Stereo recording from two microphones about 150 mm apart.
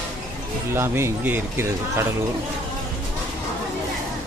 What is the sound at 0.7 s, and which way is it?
Speech, 15° right (ahead or behind).